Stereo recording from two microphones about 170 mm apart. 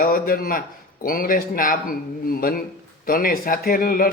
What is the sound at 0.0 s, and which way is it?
Speech, 55° left (ahead or behind).